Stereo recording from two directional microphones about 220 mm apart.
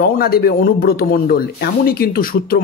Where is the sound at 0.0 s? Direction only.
45° left (ahead or behind).